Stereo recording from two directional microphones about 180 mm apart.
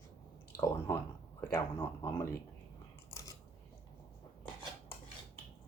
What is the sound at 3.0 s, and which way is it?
Biting, 20° left (ahead or behind).